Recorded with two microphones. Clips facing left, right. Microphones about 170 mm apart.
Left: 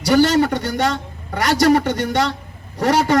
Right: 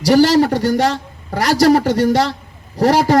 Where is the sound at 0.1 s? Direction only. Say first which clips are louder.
Right 3 dB; 35° right (ahead or behind).